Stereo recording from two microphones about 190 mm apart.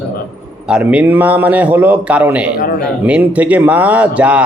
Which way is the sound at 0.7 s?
5° right (ahead or behind).